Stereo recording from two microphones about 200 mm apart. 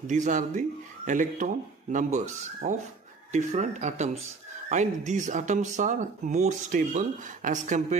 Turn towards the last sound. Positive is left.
turn(degrees=-35)  # may be behind; listen again after turning